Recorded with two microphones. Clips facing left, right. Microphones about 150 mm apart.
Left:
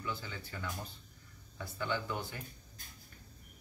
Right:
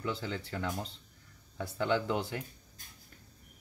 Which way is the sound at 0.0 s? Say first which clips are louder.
Right 6 dB; 75° right (ahead or behind).